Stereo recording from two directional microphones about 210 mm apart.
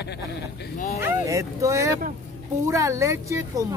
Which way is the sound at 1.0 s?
15° right (ahead or behind).